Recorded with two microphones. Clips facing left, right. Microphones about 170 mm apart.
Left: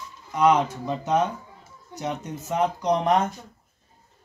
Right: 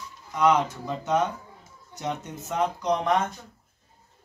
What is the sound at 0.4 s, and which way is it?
Speech, 15° left (ahead or behind).